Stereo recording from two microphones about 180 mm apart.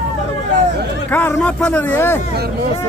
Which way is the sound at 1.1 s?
10° left (ahead or behind).